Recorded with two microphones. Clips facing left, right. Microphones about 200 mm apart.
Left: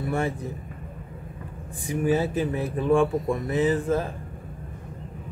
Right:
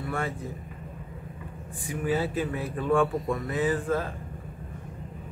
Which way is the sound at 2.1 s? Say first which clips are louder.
Left 3 dB; 20° left (ahead or behind).